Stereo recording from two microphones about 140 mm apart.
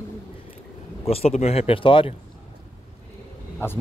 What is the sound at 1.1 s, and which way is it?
Speech, 45° left (ahead or behind).